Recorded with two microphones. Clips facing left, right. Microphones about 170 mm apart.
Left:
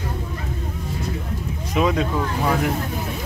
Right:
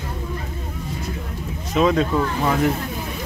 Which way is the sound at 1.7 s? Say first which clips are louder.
Right 3 dB; 10° left (ahead or behind).